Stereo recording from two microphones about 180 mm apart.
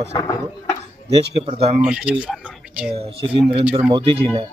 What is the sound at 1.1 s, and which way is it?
Speech, 35° right (ahead or behind).